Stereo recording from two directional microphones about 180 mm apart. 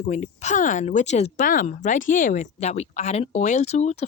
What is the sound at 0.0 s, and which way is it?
Speech, 40° left (ahead or behind).